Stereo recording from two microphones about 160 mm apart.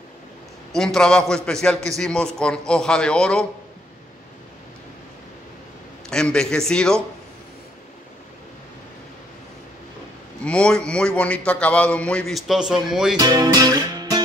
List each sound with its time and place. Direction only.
0.7 s a man's voice: 5° left (ahead or behind)
6.0 s a man's voice: 5° left (ahead or behind)
10.4 s a man's voice: 5° left (ahead or behind)
13.2 s music: 25° right (ahead or behind)